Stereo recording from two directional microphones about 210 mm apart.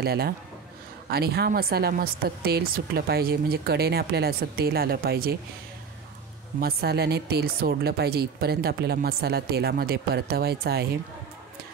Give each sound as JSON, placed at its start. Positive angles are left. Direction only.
{"t": 0.0, "sound": "speech", "side_deg": -50}
{"t": 6.6, "sound": "speech", "side_deg": -50}